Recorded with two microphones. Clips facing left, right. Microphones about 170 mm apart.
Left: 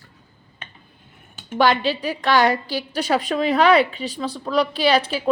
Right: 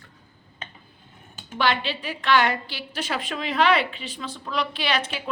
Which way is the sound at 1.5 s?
40° left (ahead or behind).